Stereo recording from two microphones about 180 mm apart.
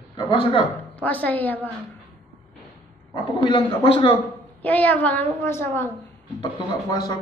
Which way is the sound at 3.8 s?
30° left (ahead or behind).